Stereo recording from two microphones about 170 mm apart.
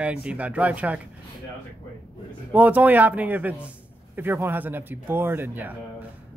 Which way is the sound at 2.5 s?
10° right (ahead or behind).